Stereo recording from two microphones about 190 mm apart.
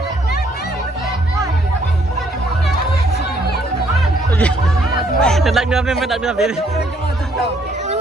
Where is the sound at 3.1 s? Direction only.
60° left (ahead or behind).